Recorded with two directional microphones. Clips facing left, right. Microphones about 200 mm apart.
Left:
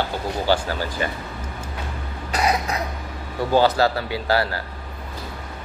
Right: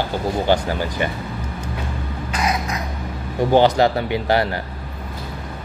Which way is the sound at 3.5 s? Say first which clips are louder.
Right 3 dB; 20° right (ahead or behind).